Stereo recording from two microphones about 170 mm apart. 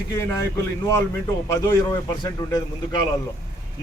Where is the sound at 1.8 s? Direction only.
20° left (ahead or behind).